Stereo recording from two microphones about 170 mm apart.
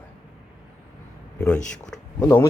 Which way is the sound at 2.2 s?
15° left (ahead or behind).